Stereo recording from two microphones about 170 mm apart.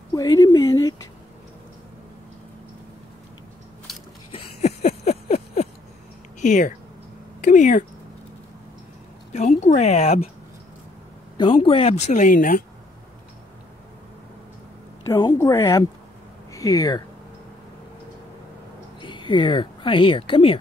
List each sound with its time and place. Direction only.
0.1 s a sound: 20° left (ahead or behind)
4.3 s a sound: 40° left (ahead or behind)
6.4 s speech: 45° left (ahead or behind)
9.3 s speech: 45° left (ahead or behind)
11.3 s speech: 30° left (ahead or behind); by 12.6 s 50° left (ahead or behind)
15.0 s a woman's voice: 20° left (ahead or behind)
18.9 s speech: 30° left (ahead or behind)